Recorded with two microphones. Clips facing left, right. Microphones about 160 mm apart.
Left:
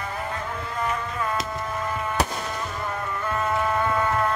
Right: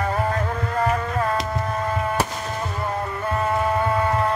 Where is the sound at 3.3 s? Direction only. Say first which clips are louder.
Right 3 dB; 35° right (ahead or behind).